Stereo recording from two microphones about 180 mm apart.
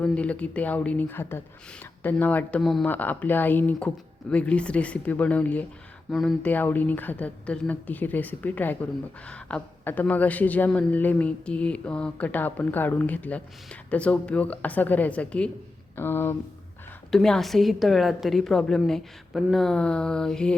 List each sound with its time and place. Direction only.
0.0 s a woman's voice: 5° left (ahead or behind)
17.1 s a woman's voice: centre (ahead or behind)